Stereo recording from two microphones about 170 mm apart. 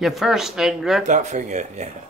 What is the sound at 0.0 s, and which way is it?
Speech, centre (ahead or behind).